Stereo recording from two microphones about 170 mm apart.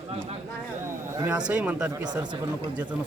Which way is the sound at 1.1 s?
10° right (ahead or behind).